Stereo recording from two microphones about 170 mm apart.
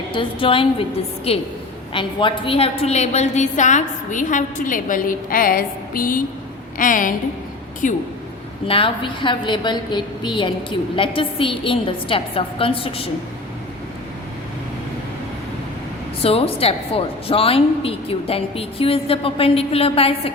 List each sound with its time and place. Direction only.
0.1 s a woman's voice: 30° left (ahead or behind); by 8.0 s 50° left (ahead or behind)
8.6 s a woman's voice: 30° left (ahead or behind)
16.2 s a woman's voice: 35° left (ahead or behind)